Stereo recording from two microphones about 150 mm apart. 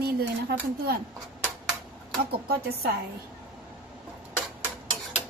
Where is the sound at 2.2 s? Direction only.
90° right.